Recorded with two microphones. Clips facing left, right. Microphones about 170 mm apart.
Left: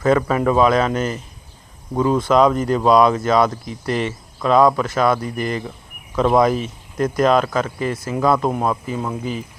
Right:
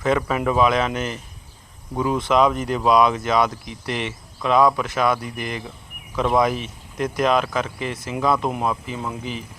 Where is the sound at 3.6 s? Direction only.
45° left (ahead or behind).